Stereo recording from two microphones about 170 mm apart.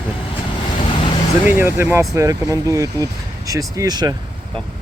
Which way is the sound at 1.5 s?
15° right (ahead or behind).